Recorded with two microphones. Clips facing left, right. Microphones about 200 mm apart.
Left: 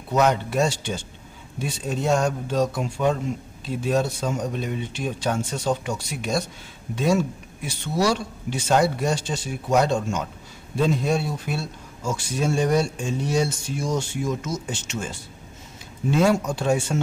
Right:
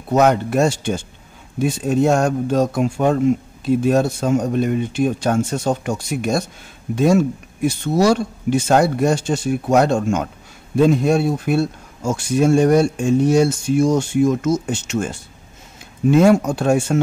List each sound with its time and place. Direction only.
0.1 s speech: 50° right (ahead or behind)